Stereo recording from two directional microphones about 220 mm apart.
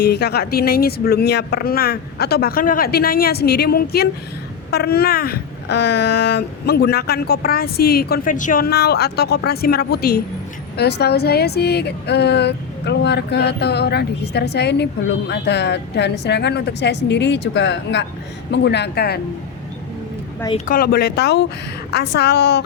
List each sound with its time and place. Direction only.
0.0 s speech: 50° left (ahead or behind)
20.7 s speech: 40° left (ahead or behind)